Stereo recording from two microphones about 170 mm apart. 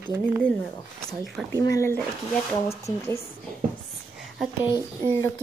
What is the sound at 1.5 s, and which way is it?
A woman's voice, 20° left (ahead or behind).